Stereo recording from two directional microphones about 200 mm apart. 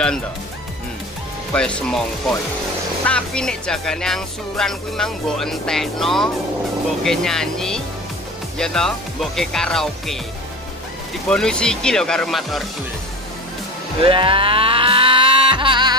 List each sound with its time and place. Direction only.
1.5 s speech: 5° left (ahead or behind)
11.2 s speech: 5° left (ahead or behind)
14.0 s a sound: 25° right (ahead or behind)